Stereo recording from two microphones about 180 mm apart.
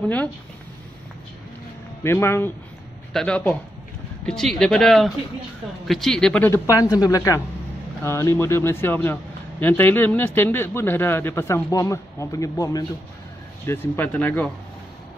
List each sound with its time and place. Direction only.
2.0 s speech: 15° left (ahead or behind)